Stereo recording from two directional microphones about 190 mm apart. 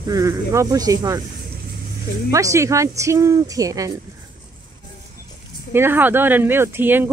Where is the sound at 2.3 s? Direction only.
15° right (ahead or behind).